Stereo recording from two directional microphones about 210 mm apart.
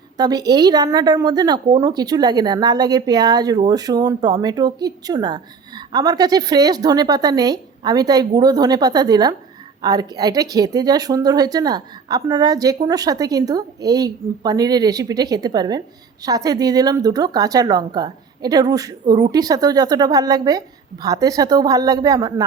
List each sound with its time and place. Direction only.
0.2 s a woman's voice: 20° right (ahead or behind)